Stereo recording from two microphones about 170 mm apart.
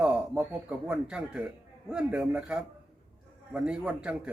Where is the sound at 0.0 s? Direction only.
10° right (ahead or behind).